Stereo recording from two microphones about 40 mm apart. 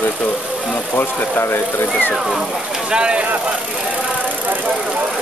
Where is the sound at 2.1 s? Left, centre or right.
Centre.